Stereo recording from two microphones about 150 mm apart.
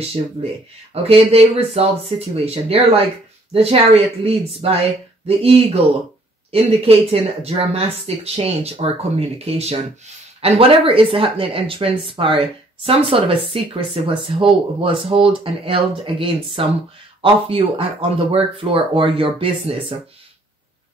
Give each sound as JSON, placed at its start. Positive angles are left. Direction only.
{"t": 1.0, "sound": "speech", "side_deg": -40}